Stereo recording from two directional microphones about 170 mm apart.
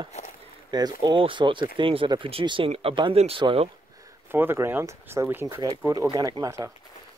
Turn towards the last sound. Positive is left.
turn(degrees=-15)  # may be behind; listen again after turning